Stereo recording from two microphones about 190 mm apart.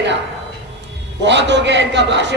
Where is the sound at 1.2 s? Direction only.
65° right (ahead or behind).